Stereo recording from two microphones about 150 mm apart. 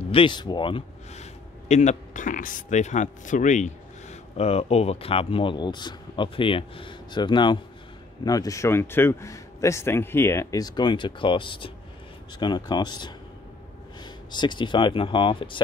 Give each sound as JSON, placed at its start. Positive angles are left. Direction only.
{"t": 0.1, "sound": "speech", "side_deg": 35}
{"t": 1.1, "sound": "a man's voice", "side_deg": 50}